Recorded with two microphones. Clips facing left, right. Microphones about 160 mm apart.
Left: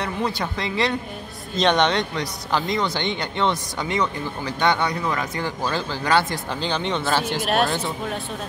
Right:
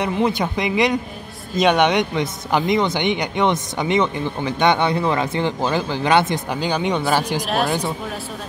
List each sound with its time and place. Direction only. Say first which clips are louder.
0.0 s a woman's voice: right 6 dB; 20° right (ahead or behind)
7.4 s speech: even; centre (ahead or behind)